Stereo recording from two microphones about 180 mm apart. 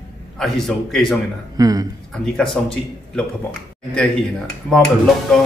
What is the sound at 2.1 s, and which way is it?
A man's voice, 5° left (ahead or behind).